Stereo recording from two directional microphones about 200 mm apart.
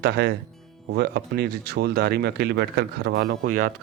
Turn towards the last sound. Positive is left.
turn(degrees=-45)  # may be behind; listen again after turning